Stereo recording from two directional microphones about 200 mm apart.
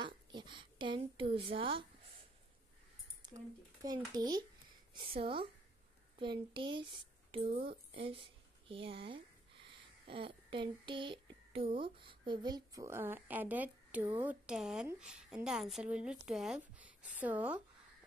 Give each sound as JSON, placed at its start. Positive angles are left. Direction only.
{"t": 0.0, "sound": "a sound", "side_deg": -25}
{"t": 1.3, "sound": "speech", "side_deg": -25}
{"t": 3.2, "sound": "a woman's voice", "side_deg": -20}